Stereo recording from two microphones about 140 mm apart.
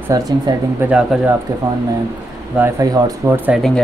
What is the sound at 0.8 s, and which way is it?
Speech, 10° right (ahead or behind).